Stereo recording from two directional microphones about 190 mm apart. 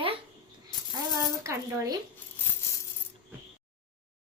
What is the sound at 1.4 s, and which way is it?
Speech, 15° right (ahead or behind).